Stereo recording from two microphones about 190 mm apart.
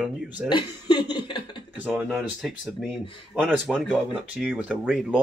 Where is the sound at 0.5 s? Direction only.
25° left (ahead or behind).